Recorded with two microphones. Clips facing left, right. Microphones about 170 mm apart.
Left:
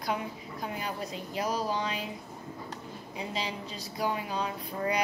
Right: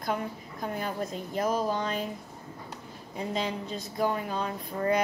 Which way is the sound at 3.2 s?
50° right (ahead or behind).